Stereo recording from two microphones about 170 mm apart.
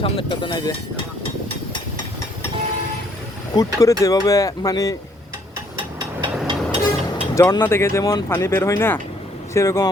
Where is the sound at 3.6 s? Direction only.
20° left (ahead or behind).